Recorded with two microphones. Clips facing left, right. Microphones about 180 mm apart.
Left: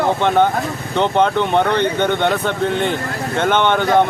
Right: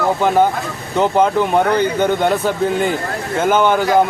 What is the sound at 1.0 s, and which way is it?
Speech, 5° right (ahead or behind).